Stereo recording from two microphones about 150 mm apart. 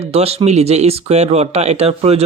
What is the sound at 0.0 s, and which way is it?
Speech, 40° right (ahead or behind).